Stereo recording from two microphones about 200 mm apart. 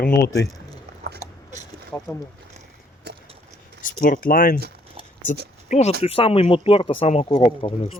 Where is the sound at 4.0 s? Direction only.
45° left (ahead or behind).